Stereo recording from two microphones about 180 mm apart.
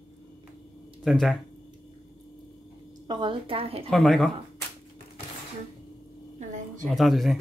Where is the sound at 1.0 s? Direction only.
Centre (ahead or behind).